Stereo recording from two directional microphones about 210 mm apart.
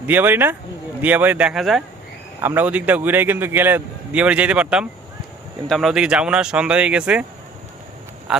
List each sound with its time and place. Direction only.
0.1 s a man's voice: 10° right (ahead or behind)
8.3 s speech: 5° right (ahead or behind)